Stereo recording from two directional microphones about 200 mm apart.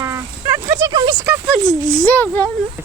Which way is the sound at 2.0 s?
10° left (ahead or behind).